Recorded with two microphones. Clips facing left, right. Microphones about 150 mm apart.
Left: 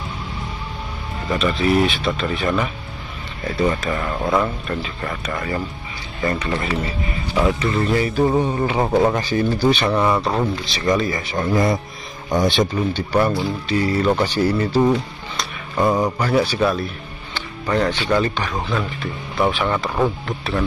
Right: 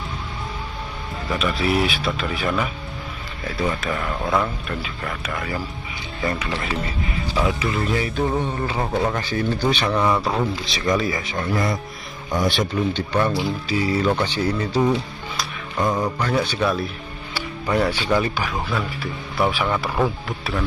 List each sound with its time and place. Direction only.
1.3 s speech: 5° right (ahead or behind)
8.3 s speech: 15° left (ahead or behind)
9.3 s speech: 5° left (ahead or behind)
11.5 s speech: 25° left (ahead or behind)
12.9 s speech: 10° left (ahead or behind)
13.7 s speech: centre (ahead or behind)
14.2 s speech: 10° left (ahead or behind)